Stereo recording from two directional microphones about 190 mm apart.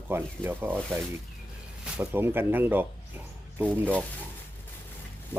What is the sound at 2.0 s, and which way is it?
Speech, 10° right (ahead or behind).